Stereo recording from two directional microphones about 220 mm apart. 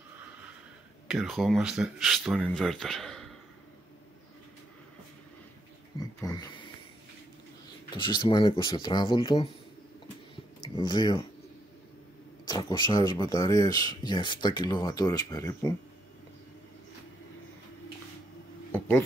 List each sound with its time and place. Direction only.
1.0 s speech: centre (ahead or behind)
5.9 s speech: 15° left (ahead or behind)
7.9 s speech: 20° left (ahead or behind)
10.8 s speech: 20° left (ahead or behind)
12.4 s speech: 15° left (ahead or behind)
18.7 s a sound: 10° left (ahead or behind)